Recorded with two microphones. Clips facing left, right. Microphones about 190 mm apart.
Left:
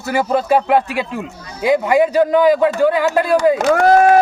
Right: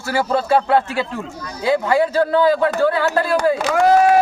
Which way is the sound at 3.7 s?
55° left (ahead or behind).